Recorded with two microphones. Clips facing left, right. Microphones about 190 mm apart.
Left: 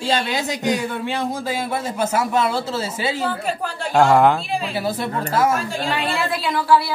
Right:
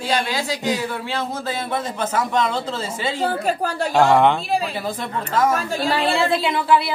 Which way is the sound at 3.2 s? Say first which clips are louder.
Right 3 dB; 40° right (ahead or behind).